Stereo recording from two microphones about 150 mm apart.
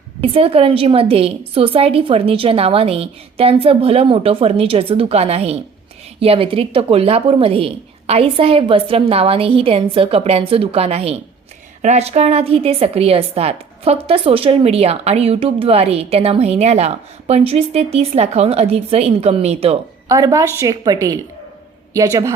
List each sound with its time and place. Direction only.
0.2 s a woman's voice: 40° right (ahead or behind)
20.1 s a woman's voice: 20° right (ahead or behind)